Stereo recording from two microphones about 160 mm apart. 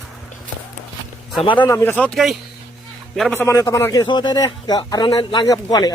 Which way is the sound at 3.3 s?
15° left (ahead or behind).